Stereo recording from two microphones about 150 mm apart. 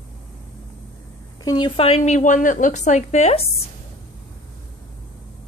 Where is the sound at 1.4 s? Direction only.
30° left (ahead or behind); by 3.4 s 50° left (ahead or behind).